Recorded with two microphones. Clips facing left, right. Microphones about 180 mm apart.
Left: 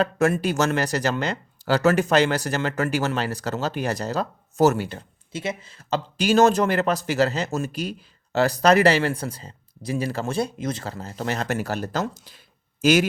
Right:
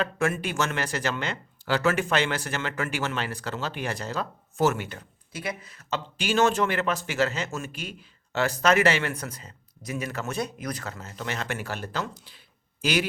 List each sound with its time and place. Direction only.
0.0 s speech: 40° left (ahead or behind)